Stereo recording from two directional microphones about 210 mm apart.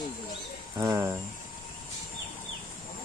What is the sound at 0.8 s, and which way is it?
Speech, 15° right (ahead or behind).